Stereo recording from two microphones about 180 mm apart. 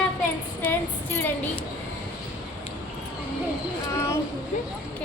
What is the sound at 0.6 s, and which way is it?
Music, 10° left (ahead or behind).